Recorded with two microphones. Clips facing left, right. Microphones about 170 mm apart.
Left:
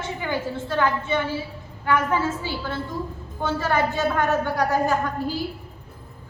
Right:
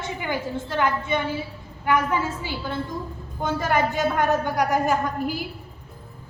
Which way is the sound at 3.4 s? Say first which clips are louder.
Even; 15° right (ahead or behind).